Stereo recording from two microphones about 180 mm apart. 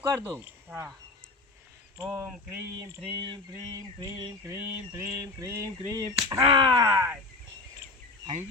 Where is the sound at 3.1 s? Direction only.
25° right (ahead or behind).